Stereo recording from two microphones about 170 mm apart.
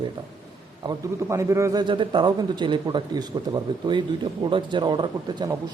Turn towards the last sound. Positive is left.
turn(degrees=-25)  # may be behind; listen again after turning